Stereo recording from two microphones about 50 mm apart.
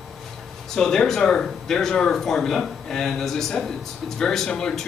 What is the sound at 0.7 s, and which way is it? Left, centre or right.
Speech, centre.